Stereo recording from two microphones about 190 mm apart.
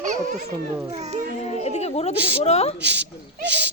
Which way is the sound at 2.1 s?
5° right (ahead or behind).